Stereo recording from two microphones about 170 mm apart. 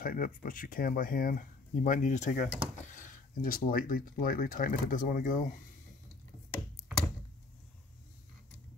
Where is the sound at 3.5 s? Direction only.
55° left (ahead or behind).